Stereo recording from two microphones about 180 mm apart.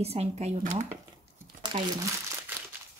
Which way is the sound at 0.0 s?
35° right (ahead or behind).